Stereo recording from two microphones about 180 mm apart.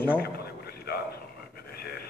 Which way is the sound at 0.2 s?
60° left (ahead or behind).